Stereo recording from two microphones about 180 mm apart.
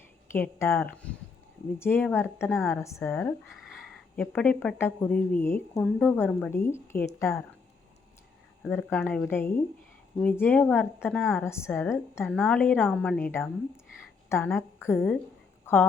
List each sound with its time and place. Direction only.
0.3 s speech: 15° left (ahead or behind)
3.2 s speech: centre (ahead or behind)
8.6 s speech: 10° left (ahead or behind)
12.2 s a woman's voice: centre (ahead or behind)